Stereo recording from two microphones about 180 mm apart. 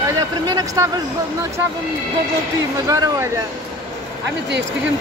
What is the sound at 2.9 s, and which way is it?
Speech, 20° right (ahead or behind).